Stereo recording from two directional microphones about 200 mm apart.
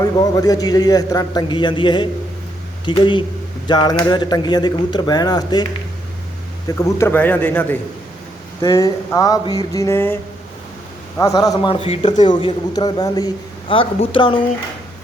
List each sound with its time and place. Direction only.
0.0 s a man's voice: 15° left (ahead or behind)
6.7 s a sound: 15° left (ahead or behind)
11.2 s a man's voice: 15° left (ahead or behind)